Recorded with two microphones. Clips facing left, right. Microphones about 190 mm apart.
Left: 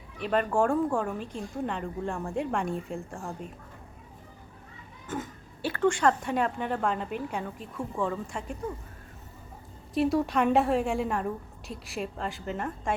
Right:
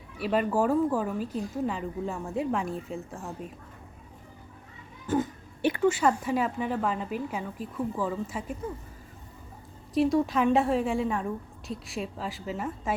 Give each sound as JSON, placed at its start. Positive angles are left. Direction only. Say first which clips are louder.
{"t": 0.2, "sound": "a woman's voice", "louder": "even", "side_deg": -5}
{"t": 5.1, "sound": "speech", "louder": "right 8 dB", "side_deg": -35}
{"t": 5.6, "sound": "a woman's voice", "louder": "right 1 dB", "side_deg": -10}
{"t": 9.9, "sound": "a woman's voice", "louder": "right 1 dB", "side_deg": 0}